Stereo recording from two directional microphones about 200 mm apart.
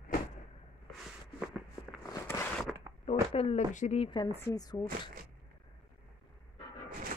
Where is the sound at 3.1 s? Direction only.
30° left (ahead or behind).